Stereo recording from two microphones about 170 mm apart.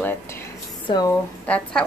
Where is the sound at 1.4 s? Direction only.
10° left (ahead or behind).